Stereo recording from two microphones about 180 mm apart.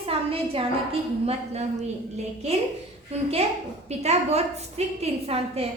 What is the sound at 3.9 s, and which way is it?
A woman's voice, 35° right (ahead or behind).